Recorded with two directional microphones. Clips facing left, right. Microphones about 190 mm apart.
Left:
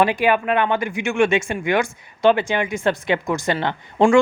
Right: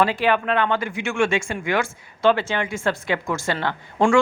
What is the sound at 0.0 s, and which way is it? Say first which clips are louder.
Speech: left 2 dB; 15° left (ahead or behind).